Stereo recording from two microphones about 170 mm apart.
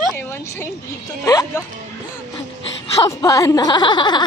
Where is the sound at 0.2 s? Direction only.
15° left (ahead or behind).